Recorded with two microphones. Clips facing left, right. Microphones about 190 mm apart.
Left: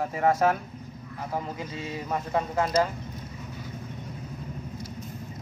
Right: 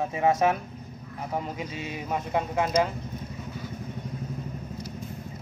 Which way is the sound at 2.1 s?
10° right (ahead or behind).